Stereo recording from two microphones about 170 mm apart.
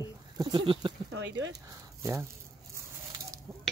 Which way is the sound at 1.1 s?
90° right.